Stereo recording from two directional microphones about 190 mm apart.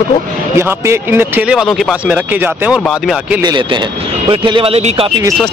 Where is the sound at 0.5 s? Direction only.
15° right (ahead or behind).